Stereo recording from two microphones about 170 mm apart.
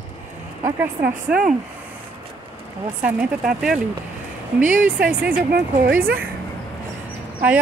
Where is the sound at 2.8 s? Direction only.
10° right (ahead or behind).